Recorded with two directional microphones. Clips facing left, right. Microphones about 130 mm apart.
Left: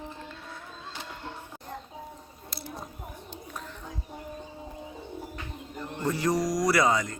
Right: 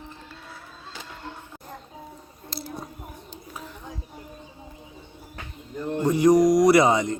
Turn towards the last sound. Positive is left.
turn(degrees=-20)  # may be behind; listen again after turning